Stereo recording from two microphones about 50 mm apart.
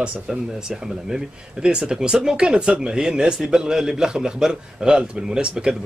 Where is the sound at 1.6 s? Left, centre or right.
Centre.